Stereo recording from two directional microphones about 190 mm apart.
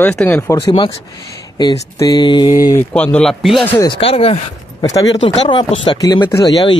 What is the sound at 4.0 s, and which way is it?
Speech, 30° left (ahead or behind).